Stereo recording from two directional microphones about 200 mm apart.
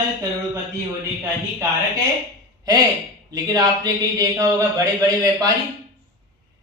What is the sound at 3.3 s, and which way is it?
Speech, 20° right (ahead or behind).